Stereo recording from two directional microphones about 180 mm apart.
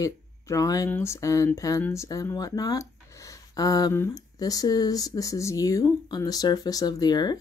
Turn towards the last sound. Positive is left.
turn(degrees=20)  # may be behind; listen again after turning